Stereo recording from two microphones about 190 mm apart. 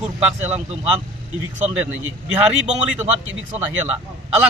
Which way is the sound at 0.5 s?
35° right (ahead or behind).